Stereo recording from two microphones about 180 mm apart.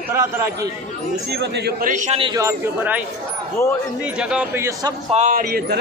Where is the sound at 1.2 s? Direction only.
70° right (ahead or behind).